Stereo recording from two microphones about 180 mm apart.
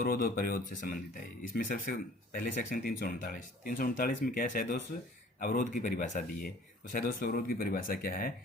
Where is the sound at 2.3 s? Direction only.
50° left (ahead or behind).